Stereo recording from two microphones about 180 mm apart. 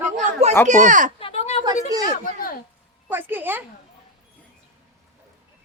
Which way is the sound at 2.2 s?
55° left (ahead or behind).